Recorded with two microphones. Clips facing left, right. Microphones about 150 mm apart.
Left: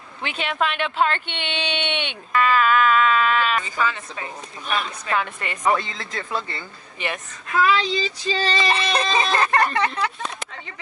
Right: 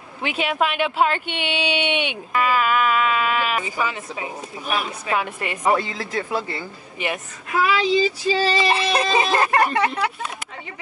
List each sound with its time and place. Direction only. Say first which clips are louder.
0.2 s speech: right 3 dB; 10° right (ahead or behind)
5.9 s speech: right 4 dB; 35° right (ahead or behind)
6.4 s speech: right 5 dB; 10° right (ahead or behind)